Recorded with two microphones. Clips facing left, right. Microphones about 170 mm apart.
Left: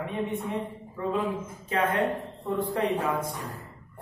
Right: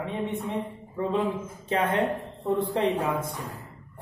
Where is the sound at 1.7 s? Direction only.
30° right (ahead or behind).